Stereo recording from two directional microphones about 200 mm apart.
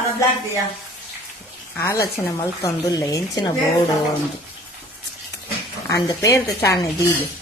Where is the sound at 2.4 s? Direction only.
15° left (ahead or behind).